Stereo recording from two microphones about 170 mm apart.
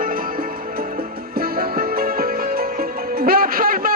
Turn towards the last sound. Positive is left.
turn(degrees=-55)  # may be behind; listen again after turning